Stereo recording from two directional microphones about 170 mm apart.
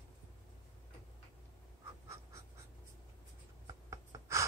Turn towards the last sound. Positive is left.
turn(degrees=-15)  # may be behind; listen again after turning